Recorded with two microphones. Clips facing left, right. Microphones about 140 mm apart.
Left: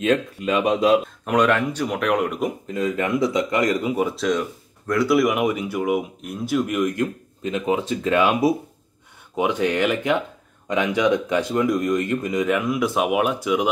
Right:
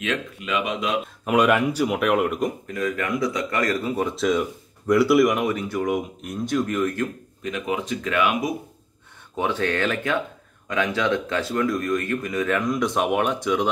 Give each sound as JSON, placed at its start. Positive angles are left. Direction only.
{"t": 0.0, "sound": "speech", "side_deg": 35}
{"t": 1.2, "sound": "speech", "side_deg": -10}
{"t": 2.6, "sound": "speech", "side_deg": 25}
{"t": 4.1, "sound": "speech", "side_deg": 0}
{"t": 7.4, "sound": "speech", "side_deg": 30}
{"t": 9.4, "sound": "speech", "side_deg": 15}